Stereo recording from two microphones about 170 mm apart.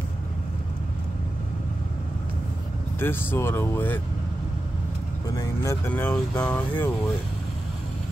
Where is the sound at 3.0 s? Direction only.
10° left (ahead or behind).